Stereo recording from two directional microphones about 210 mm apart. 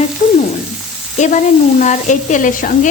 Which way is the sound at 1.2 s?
35° left (ahead or behind).